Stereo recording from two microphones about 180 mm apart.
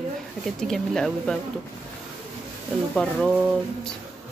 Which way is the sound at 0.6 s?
5° left (ahead or behind).